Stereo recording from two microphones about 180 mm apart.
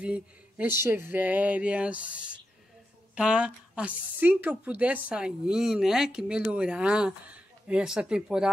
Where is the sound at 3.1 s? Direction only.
5° right (ahead or behind).